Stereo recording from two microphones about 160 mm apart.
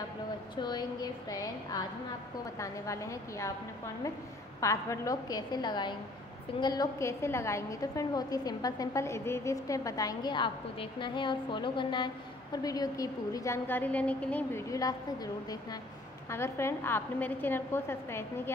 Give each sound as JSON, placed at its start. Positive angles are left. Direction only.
{"t": 0.6, "sound": "a woman's voice", "side_deg": 25}
{"t": 4.6, "sound": "a woman's voice", "side_deg": 20}
{"t": 16.3, "sound": "a woman's voice", "side_deg": 15}